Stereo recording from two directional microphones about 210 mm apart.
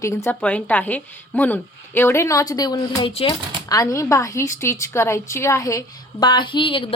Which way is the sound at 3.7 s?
15° left (ahead or behind).